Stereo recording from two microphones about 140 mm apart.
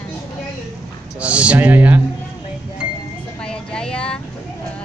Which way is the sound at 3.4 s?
5° left (ahead or behind).